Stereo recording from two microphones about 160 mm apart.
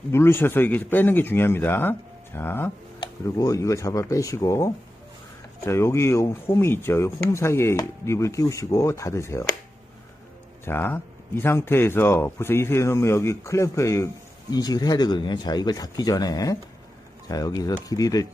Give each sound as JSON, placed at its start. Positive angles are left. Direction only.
{"t": 0.1, "sound": "speech", "side_deg": 15}
{"t": 10.6, "sound": "speech", "side_deg": 15}